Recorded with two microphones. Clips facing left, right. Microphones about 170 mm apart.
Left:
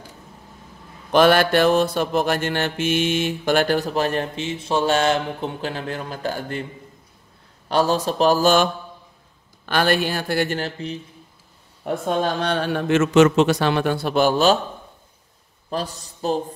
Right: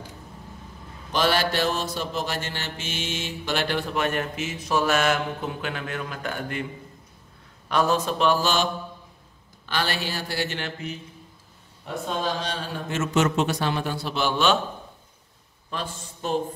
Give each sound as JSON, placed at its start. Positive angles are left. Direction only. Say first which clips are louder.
{"t": 1.1, "sound": "mantra", "louder": "left 8 dB", "side_deg": 55}
{"t": 7.6, "sound": "mantra", "louder": "left 3 dB", "side_deg": 35}
{"t": 9.7, "sound": "a man's voice", "louder": "left 8 dB", "side_deg": 55}
{"t": 10.6, "sound": "mantra", "louder": "left 5 dB", "side_deg": 30}
{"t": 11.8, "sound": "speech", "louder": "left 6 dB", "side_deg": 60}
{"t": 15.7, "sound": "mantra", "louder": "left 6 dB", "side_deg": 40}